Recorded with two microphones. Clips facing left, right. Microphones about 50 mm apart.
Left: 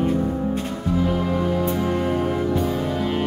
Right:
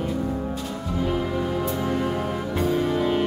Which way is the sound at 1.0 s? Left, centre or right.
Centre.